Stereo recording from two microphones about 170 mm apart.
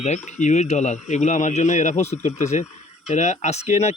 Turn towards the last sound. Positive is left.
turn(degrees=40)  # may be behind; listen again after turning